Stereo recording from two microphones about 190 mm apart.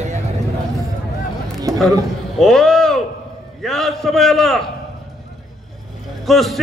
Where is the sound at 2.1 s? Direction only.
Centre (ahead or behind).